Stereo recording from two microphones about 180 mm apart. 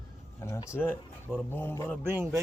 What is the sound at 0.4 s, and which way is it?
Speech, 15° left (ahead or behind).